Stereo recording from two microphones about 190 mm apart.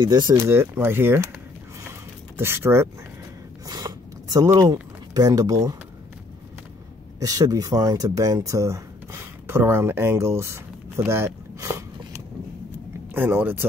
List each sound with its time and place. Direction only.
0.0 s speech: 25° right (ahead or behind)
0.5 s speech: 10° right (ahead or behind)
2.3 s speech: 15° right (ahead or behind)
3.6 s a sound: 20° right (ahead or behind)
7.2 s speech: 20° right (ahead or behind)
13.1 s speech: 10° right (ahead or behind)